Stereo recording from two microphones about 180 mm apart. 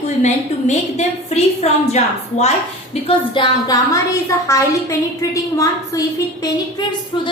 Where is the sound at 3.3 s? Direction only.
25° left (ahead or behind).